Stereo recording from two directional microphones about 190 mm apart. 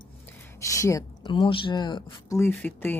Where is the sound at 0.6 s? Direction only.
15° left (ahead or behind).